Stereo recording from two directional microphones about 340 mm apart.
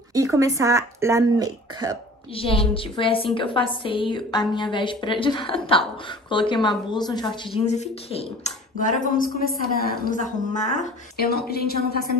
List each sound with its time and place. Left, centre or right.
0.1 s speech: centre
2.3 s a woman's voice: centre